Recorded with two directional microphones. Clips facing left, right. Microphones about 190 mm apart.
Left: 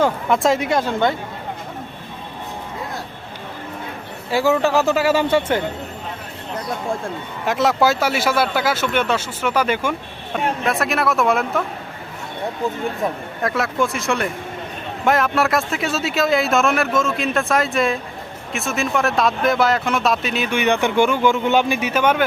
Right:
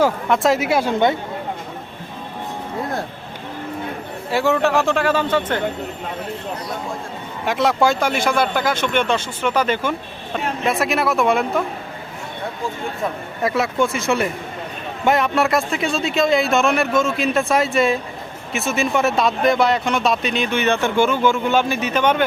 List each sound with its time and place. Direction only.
0.0 s speech: centre (ahead or behind)
4.3 s speech: centre (ahead or behind)
7.4 s speech: centre (ahead or behind)
13.4 s speech: centre (ahead or behind)